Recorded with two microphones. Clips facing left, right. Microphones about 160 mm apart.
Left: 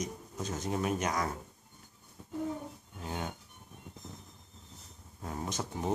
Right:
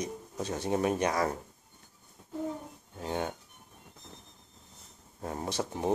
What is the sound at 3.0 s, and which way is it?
Speech, 30° right (ahead or behind).